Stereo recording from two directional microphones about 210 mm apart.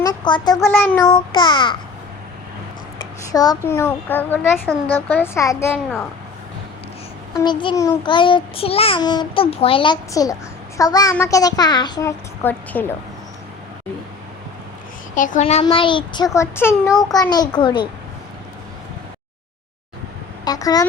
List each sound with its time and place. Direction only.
0.0 s a sound: 20° left (ahead or behind)
0.7 s child singing: 5° left (ahead or behind)
1.1 s a child's voice: 25° left (ahead or behind)
3.3 s speech: 20° left (ahead or behind)
7.3 s a child's voice: 20° left (ahead or behind)
15.1 s a child's voice: 40° left (ahead or behind); by 17.8 s 20° left (ahead or behind)
20.4 s speech: 15° left (ahead or behind)